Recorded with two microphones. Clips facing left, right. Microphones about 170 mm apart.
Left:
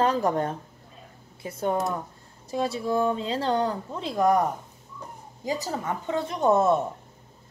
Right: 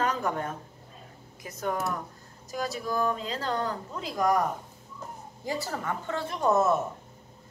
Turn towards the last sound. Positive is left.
turn(degrees=30)  # may be behind; listen again after turning